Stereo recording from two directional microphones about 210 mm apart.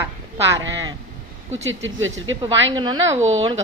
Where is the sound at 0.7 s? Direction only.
20° right (ahead or behind).